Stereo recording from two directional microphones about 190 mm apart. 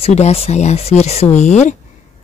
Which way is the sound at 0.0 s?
35° left (ahead or behind).